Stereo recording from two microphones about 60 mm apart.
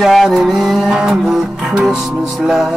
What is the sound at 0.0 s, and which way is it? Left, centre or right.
Music, centre.